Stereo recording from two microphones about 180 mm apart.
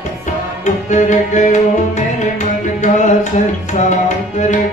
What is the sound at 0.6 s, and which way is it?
Music, 40° left (ahead or behind).